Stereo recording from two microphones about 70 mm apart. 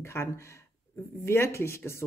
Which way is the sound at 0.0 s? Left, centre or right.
Left.